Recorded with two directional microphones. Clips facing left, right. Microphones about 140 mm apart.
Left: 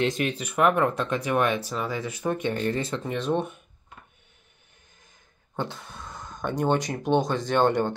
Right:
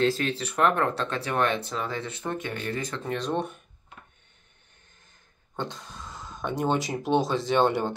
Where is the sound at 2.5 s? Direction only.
35° left (ahead or behind).